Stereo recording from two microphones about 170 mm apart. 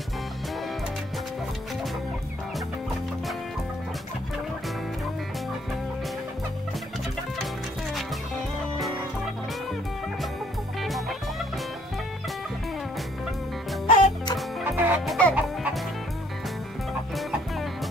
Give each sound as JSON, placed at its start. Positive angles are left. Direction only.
{"t": 10.8, "sound": "music", "side_deg": 0}
{"t": 13.8, "sound": "music", "side_deg": 25}
{"t": 14.6, "sound": "fowl", "side_deg": -10}
{"t": 15.0, "sound": "chicken", "side_deg": 5}